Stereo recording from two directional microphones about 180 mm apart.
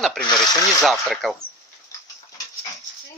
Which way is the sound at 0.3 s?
20° left (ahead or behind).